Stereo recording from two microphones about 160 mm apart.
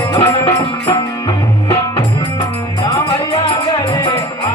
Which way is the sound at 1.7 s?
30° left (ahead or behind).